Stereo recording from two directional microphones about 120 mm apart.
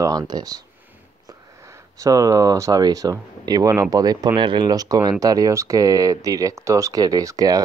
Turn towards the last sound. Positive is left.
turn(degrees=-30)  # may be behind; listen again after turning